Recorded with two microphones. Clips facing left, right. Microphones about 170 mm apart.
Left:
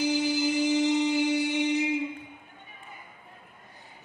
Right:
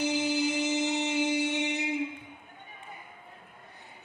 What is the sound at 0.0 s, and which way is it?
Music, 65° right (ahead or behind).